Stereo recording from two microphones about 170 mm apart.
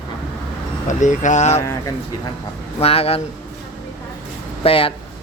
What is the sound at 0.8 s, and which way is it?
Speech, 45° left (ahead or behind).